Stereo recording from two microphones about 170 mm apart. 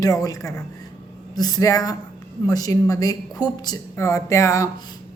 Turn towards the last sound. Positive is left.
turn(degrees=20)  # may be behind; listen again after turning